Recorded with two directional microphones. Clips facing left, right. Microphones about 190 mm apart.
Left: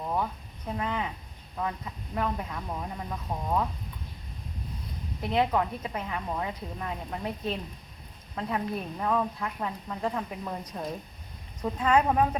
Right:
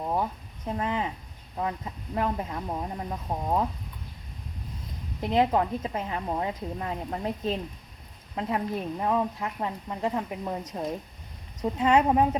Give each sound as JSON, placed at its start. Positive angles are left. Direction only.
{"t": 0.0, "sound": "a woman's voice", "side_deg": -25}
{"t": 5.3, "sound": "a woman's voice", "side_deg": -25}
{"t": 11.6, "sound": "a woman's voice", "side_deg": -20}